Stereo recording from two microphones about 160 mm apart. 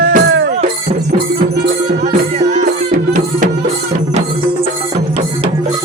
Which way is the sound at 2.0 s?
50° right (ahead or behind).